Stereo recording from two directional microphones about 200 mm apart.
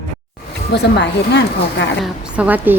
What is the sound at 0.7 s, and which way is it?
Speech, 60° left (ahead or behind).